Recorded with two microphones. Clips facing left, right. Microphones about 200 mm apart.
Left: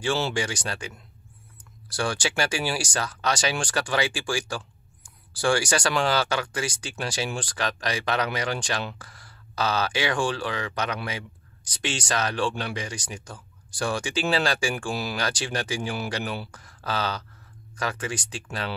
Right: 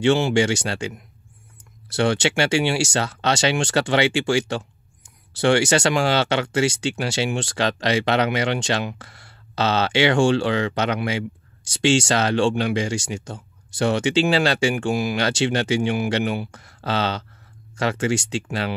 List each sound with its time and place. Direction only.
0.0 s speech: 25° right (ahead or behind)